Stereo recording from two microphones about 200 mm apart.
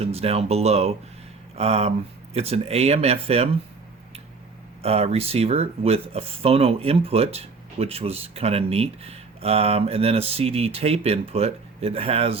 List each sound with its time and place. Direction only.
0.0 s speech: 30° right (ahead or behind)
4.8 s speech: 30° right (ahead or behind)